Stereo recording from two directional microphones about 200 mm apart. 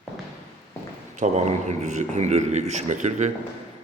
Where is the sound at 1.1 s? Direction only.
35° right (ahead or behind).